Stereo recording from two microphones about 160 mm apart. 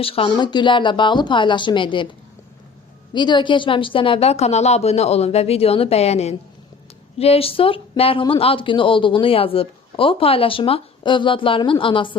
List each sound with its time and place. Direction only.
0.0 s speech: 35° left (ahead or behind)
3.1 s speech: 30° left (ahead or behind)